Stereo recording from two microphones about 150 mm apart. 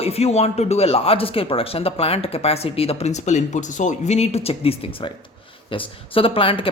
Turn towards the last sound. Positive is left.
turn(degrees=35)  # may be behind; listen again after turning